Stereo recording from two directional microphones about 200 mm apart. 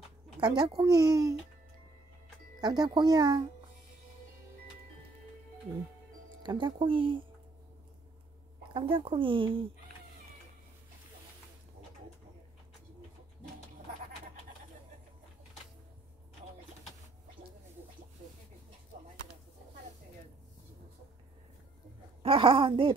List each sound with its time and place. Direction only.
0.4 s speech: 20° right (ahead or behind)
2.6 s speech: 20° right (ahead or behind)
6.4 s speech: 25° right (ahead or behind)
8.7 s speech: 25° right (ahead or behind)
22.2 s speech: 25° right (ahead or behind)